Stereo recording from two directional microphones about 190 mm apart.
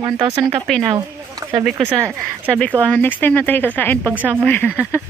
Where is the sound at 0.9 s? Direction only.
20° right (ahead or behind).